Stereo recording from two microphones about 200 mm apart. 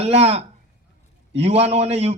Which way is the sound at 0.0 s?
30° right (ahead or behind).